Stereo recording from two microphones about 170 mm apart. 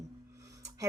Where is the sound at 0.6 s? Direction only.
20° right (ahead or behind).